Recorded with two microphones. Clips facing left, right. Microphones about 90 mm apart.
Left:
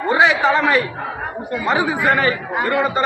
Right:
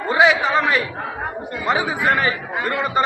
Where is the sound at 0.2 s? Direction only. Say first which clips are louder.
Even; 15° right (ahead or behind).